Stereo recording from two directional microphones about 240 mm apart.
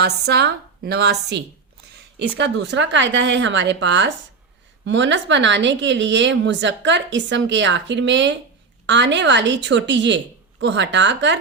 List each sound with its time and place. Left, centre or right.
0.0 s speech: right